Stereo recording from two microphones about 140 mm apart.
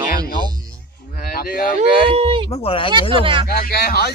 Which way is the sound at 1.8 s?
45° right (ahead or behind).